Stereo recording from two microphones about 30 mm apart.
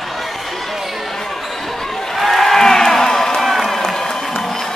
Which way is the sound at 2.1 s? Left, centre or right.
Centre.